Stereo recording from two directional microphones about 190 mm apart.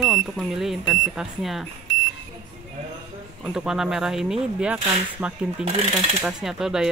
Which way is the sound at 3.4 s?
5° right (ahead or behind).